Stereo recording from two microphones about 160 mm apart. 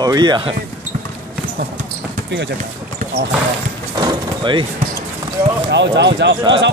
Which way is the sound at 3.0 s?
75° right (ahead or behind).